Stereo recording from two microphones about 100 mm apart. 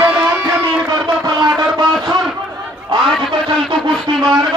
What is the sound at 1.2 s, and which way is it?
Music, 35° right (ahead or behind).